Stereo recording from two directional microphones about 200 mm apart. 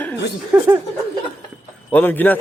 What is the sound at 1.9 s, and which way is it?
Speech, 10° left (ahead or behind).